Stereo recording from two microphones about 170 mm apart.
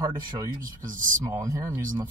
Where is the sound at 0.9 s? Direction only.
50° right (ahead or behind).